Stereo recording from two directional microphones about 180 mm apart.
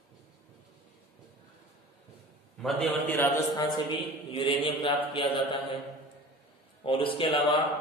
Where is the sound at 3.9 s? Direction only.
30° left (ahead or behind).